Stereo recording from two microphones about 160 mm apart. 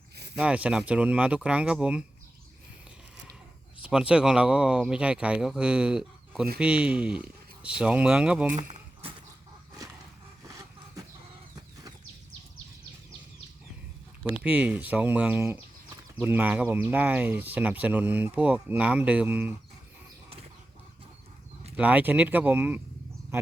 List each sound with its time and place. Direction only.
0.3 s speech: 10° right (ahead or behind)
3.8 s speech: 5° right (ahead or behind)
8.5 s a sound: 50° right (ahead or behind)
14.4 s speech: 5° right (ahead or behind)
21.8 s speech: 10° right (ahead or behind)